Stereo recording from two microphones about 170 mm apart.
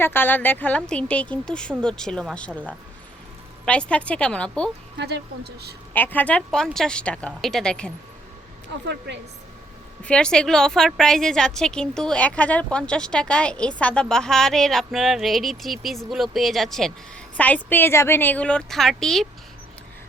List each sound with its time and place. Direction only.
0.0 s a woman's voice: 10° left (ahead or behind)
4.9 s speech: 80° right
5.9 s a woman's voice: 10° left (ahead or behind)
10.0 s a woman's voice: 5° left (ahead or behind)